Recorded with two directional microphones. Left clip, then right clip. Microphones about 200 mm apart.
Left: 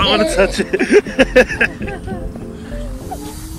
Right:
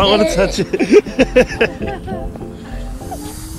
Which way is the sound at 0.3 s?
35° right (ahead or behind).